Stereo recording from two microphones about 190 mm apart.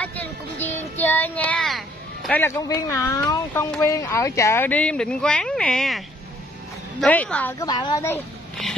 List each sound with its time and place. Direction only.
0.0 s child singing: 10° left (ahead or behind)
2.4 s speech: 15° left (ahead or behind)
7.5 s speech: 20° left (ahead or behind)